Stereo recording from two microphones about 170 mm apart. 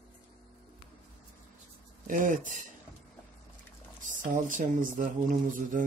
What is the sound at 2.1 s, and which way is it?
Speech, 50° right (ahead or behind).